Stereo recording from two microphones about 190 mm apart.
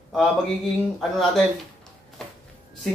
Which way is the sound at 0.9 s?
Centre (ahead or behind).